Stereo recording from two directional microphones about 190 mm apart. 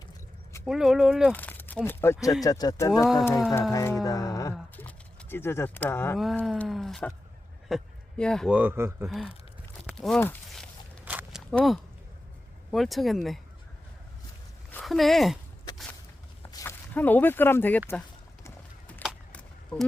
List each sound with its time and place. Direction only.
0.6 s speech: centre (ahead or behind)
1.3 s speech: 10° left (ahead or behind)
4.0 s music: 20° left (ahead or behind)
4.8 s speech: 10° left (ahead or behind)
6.1 s speech: centre (ahead or behind)
8.5 s speech: 10° right (ahead or behind)
9.0 s speech: centre (ahead or behind)
9.8 s walk: centre (ahead or behind)
12.7 s speech: centre (ahead or behind)
14.7 s speech: 5° left (ahead or behind)
16.5 s speech: 15° left (ahead or behind)
18.4 s a sound: 10° left (ahead or behind)